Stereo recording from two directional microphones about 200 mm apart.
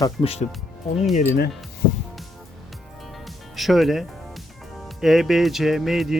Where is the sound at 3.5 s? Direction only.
Centre (ahead or behind).